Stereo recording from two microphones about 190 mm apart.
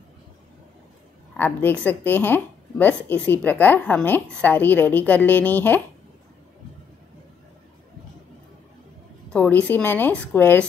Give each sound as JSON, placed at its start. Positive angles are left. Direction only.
{"t": 1.3, "sound": "a woman's voice", "side_deg": 10}
{"t": 9.3, "sound": "a woman's voice", "side_deg": 10}